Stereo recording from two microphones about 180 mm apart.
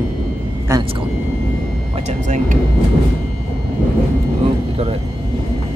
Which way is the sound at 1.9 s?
40° right (ahead or behind).